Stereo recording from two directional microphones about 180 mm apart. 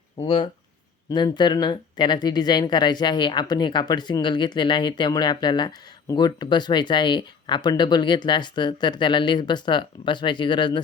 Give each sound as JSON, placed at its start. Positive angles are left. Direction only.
{"t": 0.2, "sound": "speech", "side_deg": 30}